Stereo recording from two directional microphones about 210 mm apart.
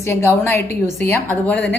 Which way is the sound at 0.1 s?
10° left (ahead or behind).